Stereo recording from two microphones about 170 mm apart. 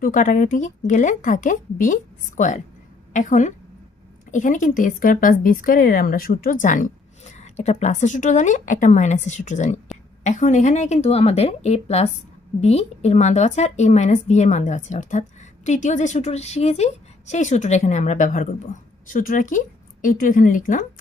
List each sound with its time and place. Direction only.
0.0 s a woman's voice: 50° left (ahead or behind)